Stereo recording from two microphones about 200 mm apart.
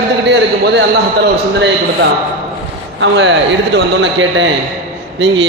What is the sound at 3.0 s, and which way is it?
A man's voice, 60° right (ahead or behind).